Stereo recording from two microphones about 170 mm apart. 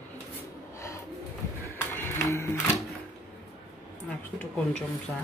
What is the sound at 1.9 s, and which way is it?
Music, 15° left (ahead or behind).